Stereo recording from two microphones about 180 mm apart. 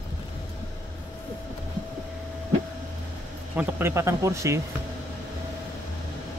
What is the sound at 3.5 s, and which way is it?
Speech, 15° right (ahead or behind).